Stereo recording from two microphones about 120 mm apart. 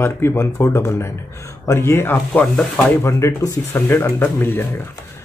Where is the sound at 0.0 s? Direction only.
20° left (ahead or behind).